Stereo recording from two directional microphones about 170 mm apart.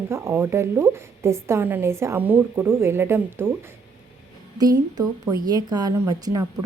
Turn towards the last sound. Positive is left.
turn(degrees=-20)  # may be behind; listen again after turning